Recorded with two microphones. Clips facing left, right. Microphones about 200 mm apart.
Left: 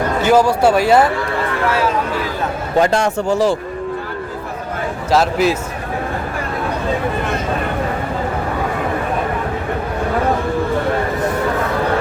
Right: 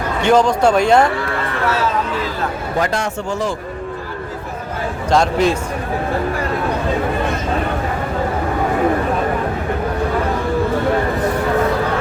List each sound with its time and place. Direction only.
0.2 s speech: 5° left (ahead or behind)
2.8 s a man's voice: 30° left (ahead or behind)
5.1 s speech: 5° left (ahead or behind)